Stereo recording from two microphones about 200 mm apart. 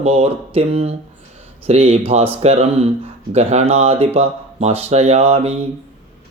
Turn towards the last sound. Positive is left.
turn(degrees=-30)  # may be behind; listen again after turning